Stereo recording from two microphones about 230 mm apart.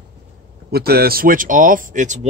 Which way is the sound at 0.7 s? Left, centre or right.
Right.